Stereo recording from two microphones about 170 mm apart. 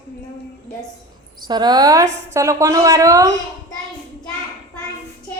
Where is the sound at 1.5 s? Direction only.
25° right (ahead or behind).